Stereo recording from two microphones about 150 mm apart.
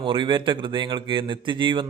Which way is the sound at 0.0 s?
30° right (ahead or behind).